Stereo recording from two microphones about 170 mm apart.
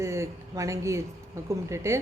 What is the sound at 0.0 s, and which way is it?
A woman's voice, 15° right (ahead or behind).